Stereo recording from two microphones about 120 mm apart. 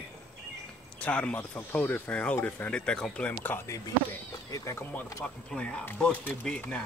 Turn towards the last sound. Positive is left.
turn(degrees=10)  # may be behind; listen again after turning